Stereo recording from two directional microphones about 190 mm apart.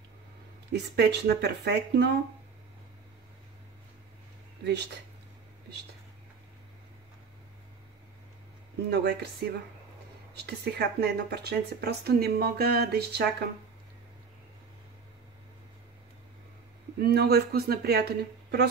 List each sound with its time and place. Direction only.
0.7 s speech: 60° right (ahead or behind)
4.6 s speech: 60° right (ahead or behind)
8.9 s speech: 55° right (ahead or behind)
17.0 s speech: 55° right (ahead or behind)